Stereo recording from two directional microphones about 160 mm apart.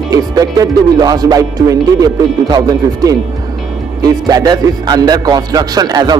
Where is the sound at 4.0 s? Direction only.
25° right (ahead or behind).